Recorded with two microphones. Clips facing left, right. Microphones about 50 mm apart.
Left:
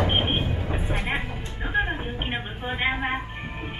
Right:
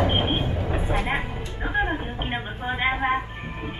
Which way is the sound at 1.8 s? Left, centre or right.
Centre.